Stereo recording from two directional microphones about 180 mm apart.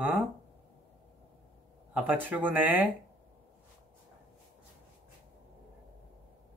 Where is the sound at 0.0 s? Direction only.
10° right (ahead or behind).